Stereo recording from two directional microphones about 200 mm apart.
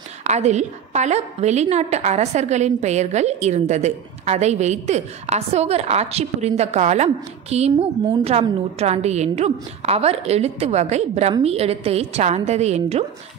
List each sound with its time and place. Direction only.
0.2 s a woman's voice: 35° right (ahead or behind)